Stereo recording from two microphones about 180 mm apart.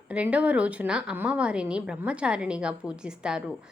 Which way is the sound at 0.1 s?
5° right (ahead or behind).